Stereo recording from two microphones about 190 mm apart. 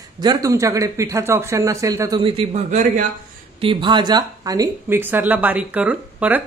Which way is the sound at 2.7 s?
40° right (ahead or behind).